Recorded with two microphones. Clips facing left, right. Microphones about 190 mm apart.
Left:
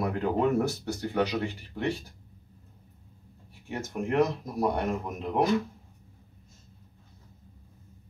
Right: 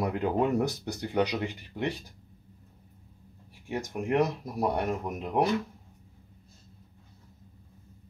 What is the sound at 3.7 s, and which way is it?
Speech, 15° right (ahead or behind).